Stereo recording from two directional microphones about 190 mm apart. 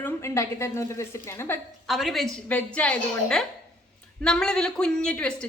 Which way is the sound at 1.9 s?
Centre (ahead or behind).